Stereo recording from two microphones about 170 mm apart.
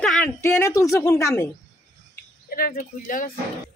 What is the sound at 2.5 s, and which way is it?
Speech, 60° left (ahead or behind).